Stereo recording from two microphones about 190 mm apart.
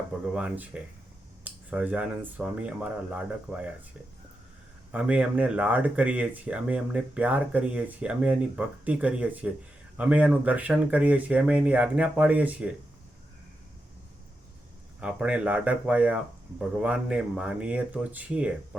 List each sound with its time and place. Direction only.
0.3 s speech: 5° right (ahead or behind)
4.9 s speech: 5° right (ahead or behind)
15.0 s speech: 5° right (ahead or behind)